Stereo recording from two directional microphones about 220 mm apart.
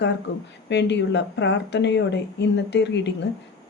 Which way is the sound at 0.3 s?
55° left (ahead or behind).